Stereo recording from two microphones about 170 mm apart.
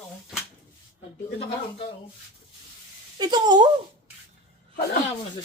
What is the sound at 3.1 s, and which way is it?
Speech, 25° right (ahead or behind).